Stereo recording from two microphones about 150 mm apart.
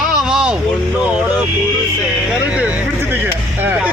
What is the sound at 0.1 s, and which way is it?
Vehicle, 5° right (ahead or behind).